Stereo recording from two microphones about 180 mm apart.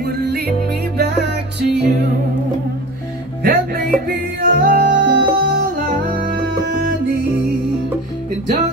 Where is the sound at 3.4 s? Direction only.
50° right (ahead or behind).